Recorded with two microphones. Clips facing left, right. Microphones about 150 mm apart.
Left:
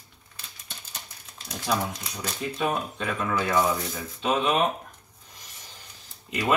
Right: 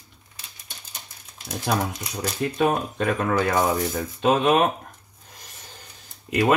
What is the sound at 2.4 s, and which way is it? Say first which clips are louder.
Speech: right 5 dB; 50° right (ahead or behind).